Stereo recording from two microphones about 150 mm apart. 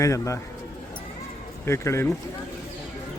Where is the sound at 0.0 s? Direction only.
20° left (ahead or behind).